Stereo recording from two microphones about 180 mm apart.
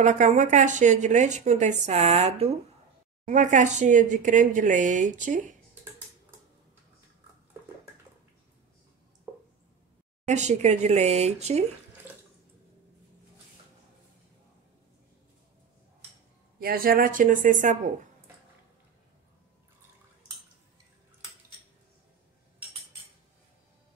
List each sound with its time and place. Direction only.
0.0 s speech: 45° right (ahead or behind)
10.2 s speech: 40° right (ahead or behind)
16.5 s speech: 55° right (ahead or behind)